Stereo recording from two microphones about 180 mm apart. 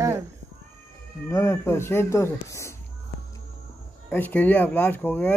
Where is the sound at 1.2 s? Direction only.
15° left (ahead or behind).